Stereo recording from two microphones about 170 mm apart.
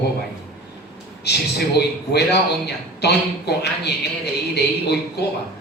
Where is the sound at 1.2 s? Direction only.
75° left (ahead or behind).